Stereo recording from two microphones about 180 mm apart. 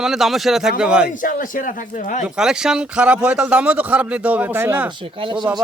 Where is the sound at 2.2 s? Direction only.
5° right (ahead or behind).